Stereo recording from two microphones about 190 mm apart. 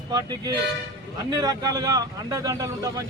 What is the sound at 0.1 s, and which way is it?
Speech, 20° right (ahead or behind).